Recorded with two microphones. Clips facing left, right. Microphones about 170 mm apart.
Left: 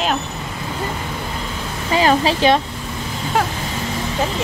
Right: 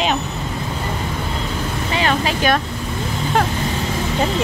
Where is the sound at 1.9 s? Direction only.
35° left (ahead or behind).